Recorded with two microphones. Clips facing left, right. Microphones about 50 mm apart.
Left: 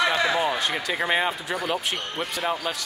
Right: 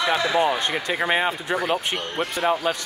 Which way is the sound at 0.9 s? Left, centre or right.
Centre.